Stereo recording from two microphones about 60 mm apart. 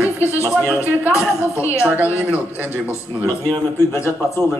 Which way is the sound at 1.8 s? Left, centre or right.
Right.